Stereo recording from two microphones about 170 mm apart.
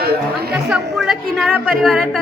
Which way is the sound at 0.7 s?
Centre (ahead or behind).